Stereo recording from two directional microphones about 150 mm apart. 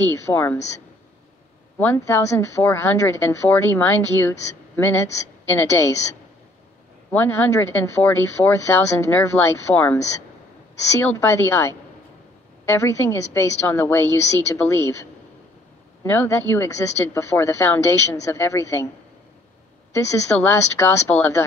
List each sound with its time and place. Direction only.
0.1 s a woman's voice: 15° left (ahead or behind)
1.8 s a woman's voice: 15° left (ahead or behind)
7.1 s a woman's voice: 15° left (ahead or behind)
11.0 s a woman's voice: 15° left (ahead or behind)
16.0 s a woman's voice: 15° left (ahead or behind)
19.9 s a woman's voice: 15° left (ahead or behind)